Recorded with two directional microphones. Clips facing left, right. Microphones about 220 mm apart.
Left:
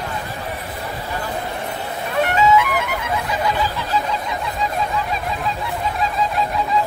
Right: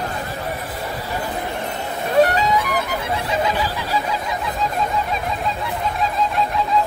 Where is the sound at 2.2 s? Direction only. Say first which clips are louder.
Left 1 dB; 35° right (ahead or behind).